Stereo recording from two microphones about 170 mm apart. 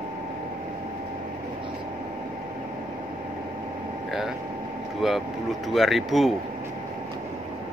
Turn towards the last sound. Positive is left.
turn(degrees=0)  # may be behind; listen again after turning